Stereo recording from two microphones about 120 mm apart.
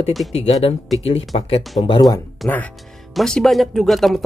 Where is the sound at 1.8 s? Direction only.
70° left (ahead or behind).